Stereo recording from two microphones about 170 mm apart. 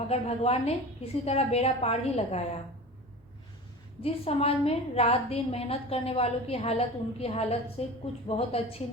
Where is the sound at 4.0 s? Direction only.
35° left (ahead or behind).